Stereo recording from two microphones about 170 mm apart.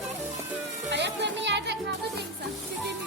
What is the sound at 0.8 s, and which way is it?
Music, 90° right.